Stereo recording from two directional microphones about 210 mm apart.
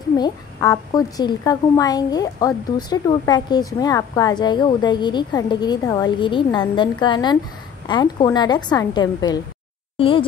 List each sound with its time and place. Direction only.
0.2 s a woman's voice: 15° left (ahead or behind)